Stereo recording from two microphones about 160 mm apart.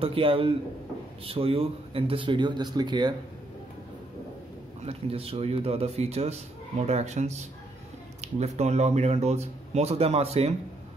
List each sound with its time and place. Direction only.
0.0 s speech: 35° right (ahead or behind)
4.8 s speech: 35° right (ahead or behind)